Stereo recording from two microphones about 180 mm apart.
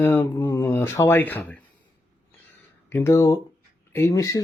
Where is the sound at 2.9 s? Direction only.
15° left (ahead or behind).